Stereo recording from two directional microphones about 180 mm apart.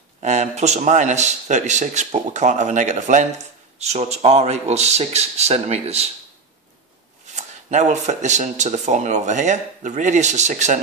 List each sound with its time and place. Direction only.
0.2 s speech: 40° right (ahead or behind)
7.3 s speech: 40° right (ahead or behind)